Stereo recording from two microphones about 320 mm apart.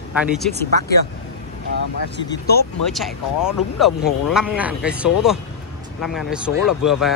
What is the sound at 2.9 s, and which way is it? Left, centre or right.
Speech, centre.